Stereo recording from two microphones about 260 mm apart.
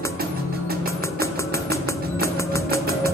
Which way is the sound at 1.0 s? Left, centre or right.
Centre.